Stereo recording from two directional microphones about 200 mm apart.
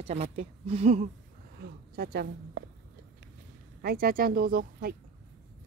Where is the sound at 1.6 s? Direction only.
50° right (ahead or behind).